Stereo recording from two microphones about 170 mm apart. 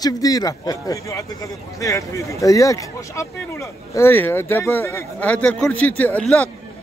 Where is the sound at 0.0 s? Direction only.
20° left (ahead or behind).